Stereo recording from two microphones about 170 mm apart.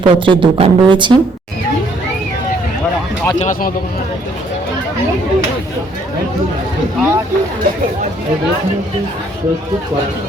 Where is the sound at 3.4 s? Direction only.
45° left (ahead or behind).